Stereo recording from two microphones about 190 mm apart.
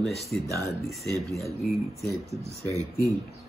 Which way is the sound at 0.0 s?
Centre (ahead or behind).